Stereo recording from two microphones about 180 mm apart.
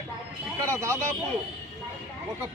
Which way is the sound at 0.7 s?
15° right (ahead or behind).